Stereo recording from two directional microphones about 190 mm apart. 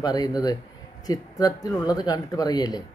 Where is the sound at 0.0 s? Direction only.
20° left (ahead or behind).